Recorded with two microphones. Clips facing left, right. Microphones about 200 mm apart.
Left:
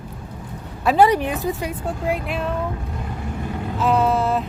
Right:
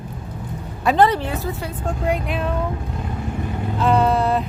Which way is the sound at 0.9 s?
10° left (ahead or behind).